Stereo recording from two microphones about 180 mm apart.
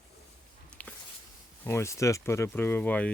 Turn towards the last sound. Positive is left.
turn(degrees=10)  # may be behind; listen again after turning